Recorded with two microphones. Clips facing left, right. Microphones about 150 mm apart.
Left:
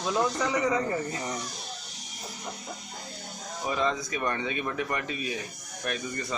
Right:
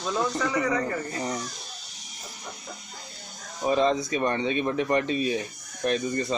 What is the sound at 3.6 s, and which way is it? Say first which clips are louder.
Speech: right 6 dB; 30° right (ahead or behind).